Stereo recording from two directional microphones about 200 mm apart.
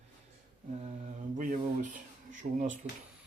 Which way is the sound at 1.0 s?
40° right (ahead or behind).